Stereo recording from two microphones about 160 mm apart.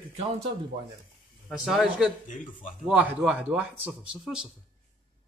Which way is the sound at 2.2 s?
55° left (ahead or behind).